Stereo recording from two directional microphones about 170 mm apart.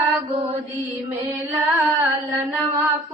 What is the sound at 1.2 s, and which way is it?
Female singing, 10° right (ahead or behind).